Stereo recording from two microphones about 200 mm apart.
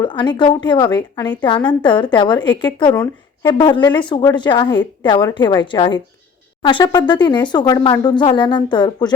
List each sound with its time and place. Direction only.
0.0 s a woman's voice: 20° left (ahead or behind)